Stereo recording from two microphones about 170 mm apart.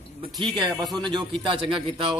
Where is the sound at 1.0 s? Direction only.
30° right (ahead or behind).